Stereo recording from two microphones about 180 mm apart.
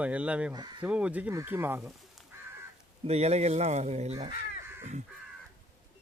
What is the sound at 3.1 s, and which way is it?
Speech, 35° right (ahead or behind).